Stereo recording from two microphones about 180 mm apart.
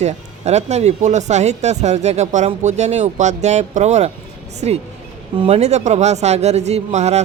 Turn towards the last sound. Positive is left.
turn(degrees=-40)  # may be behind; listen again after turning